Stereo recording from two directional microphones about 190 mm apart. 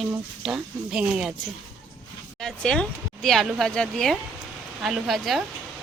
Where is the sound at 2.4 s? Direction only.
5° left (ahead or behind).